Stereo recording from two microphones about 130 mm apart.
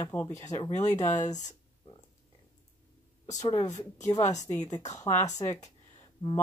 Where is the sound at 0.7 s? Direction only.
65° left (ahead or behind).